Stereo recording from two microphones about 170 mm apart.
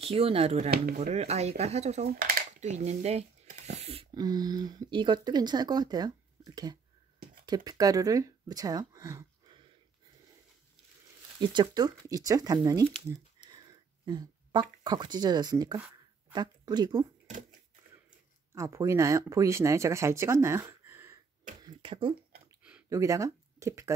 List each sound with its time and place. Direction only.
0.0 s speech: 35° right (ahead or behind)
2.6 s a sound: 40° right (ahead or behind)
4.1 s a woman's voice: 25° right (ahead or behind)
11.5 s speech: 25° right (ahead or behind)
14.0 s speech: 25° right (ahead or behind)
18.5 s speech: 15° right (ahead or behind)
21.6 s a sound: 30° right (ahead or behind)
22.6 s a sound: 5° right (ahead or behind)
22.8 s speech: 20° right (ahead or behind)